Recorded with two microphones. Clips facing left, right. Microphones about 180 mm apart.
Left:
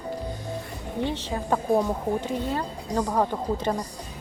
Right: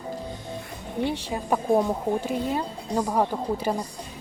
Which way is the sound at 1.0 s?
10° right (ahead or behind).